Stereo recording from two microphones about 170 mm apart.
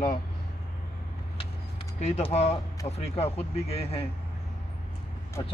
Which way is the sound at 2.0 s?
40° left (ahead or behind).